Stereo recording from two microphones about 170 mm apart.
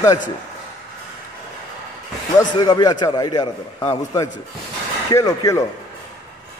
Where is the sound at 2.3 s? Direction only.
25° left (ahead or behind).